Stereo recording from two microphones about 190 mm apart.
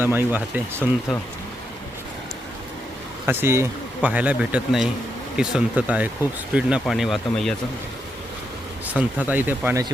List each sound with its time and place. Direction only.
0.0 s speech: 10° right (ahead or behind)
3.2 s speech: 10° right (ahead or behind)
9.0 s speech: 10° right (ahead or behind)